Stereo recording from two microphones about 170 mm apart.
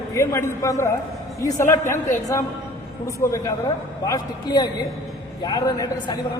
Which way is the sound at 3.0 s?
20° left (ahead or behind).